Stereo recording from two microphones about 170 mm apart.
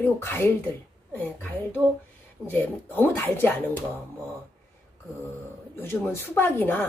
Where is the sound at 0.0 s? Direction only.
15° left (ahead or behind).